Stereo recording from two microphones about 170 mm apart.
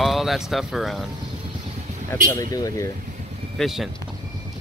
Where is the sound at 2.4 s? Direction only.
20° left (ahead or behind).